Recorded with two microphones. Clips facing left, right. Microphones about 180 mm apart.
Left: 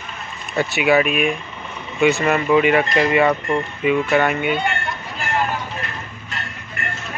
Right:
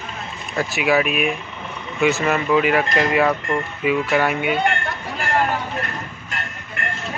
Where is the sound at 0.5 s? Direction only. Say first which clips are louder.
Left 2 dB; centre (ahead or behind).